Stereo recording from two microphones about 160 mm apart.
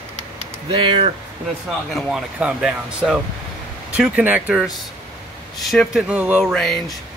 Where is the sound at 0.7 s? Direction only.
35° right (ahead or behind).